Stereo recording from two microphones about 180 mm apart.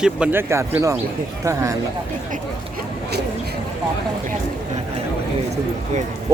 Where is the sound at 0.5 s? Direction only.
15° right (ahead or behind).